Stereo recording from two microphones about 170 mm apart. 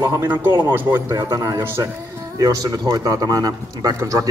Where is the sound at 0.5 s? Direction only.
25° right (ahead or behind).